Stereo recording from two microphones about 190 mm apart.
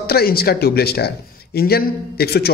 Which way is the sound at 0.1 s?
55° left (ahead or behind).